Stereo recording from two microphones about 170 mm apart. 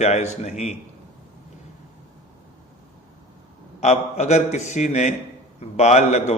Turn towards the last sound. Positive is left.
turn(degrees=40)  # may be behind; listen again after turning